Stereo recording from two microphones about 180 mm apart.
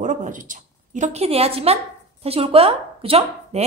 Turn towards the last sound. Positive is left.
turn(degrees=-35)  # may be behind; listen again after turning